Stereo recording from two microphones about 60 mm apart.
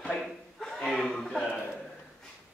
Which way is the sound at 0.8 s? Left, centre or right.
Centre.